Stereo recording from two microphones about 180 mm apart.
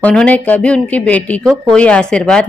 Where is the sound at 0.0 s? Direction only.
5° left (ahead or behind).